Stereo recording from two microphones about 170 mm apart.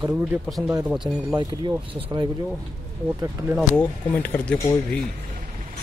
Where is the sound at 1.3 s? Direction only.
25° right (ahead or behind).